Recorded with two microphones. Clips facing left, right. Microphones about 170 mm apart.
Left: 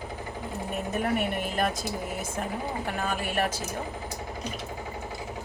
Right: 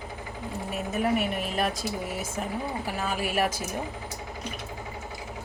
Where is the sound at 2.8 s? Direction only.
5° right (ahead or behind).